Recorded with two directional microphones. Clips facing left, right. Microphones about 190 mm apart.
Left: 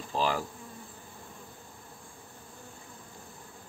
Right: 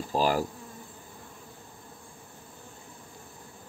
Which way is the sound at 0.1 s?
40° right (ahead or behind).